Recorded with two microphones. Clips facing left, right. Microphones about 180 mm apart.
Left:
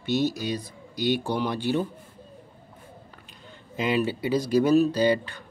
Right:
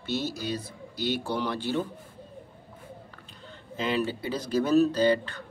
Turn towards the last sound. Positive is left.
turn(degrees=15)  # may be behind; listen again after turning